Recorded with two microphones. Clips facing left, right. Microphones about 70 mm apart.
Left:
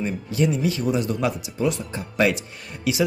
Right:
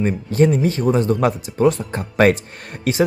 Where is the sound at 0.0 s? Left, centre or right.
Right.